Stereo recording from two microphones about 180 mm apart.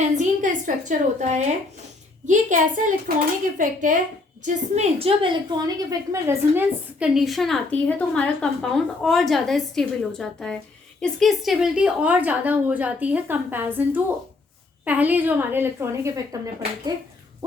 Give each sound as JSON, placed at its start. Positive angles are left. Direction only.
{"t": 0.0, "sound": "a woman's voice", "side_deg": -45}